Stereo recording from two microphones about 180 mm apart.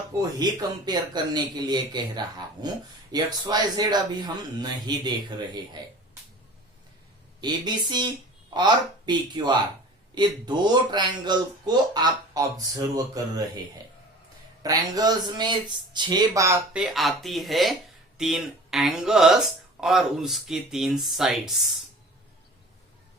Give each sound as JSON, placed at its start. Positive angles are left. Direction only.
{"t": 0.4, "sound": "speech", "side_deg": -20}
{"t": 7.4, "sound": "speech", "side_deg": -25}
{"t": 14.6, "sound": "speech", "side_deg": -20}
{"t": 16.7, "sound": "speech", "side_deg": 0}